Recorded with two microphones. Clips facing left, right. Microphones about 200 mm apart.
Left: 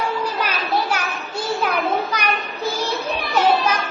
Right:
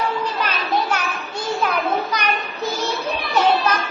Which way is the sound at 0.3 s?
10° left (ahead or behind).